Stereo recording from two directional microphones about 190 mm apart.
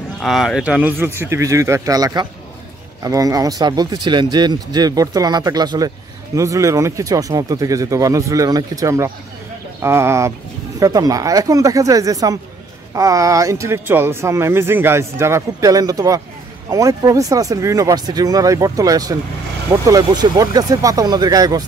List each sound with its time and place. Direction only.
0.2 s speech: centre (ahead or behind); by 21.6 s 20° right (ahead or behind)